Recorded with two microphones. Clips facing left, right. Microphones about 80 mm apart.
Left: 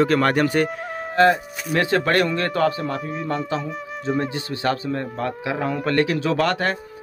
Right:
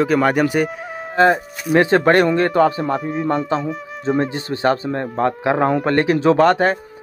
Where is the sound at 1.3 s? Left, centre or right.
Right.